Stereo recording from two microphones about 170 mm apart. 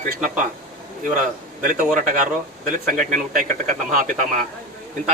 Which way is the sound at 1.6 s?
50° right (ahead or behind).